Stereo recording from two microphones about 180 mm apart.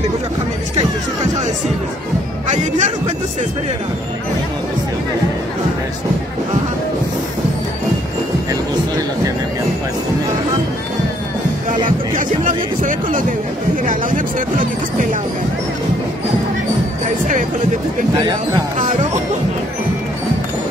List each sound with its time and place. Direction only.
2.4 s speech: 40° right (ahead or behind)
12.2 s speech: 45° right (ahead or behind)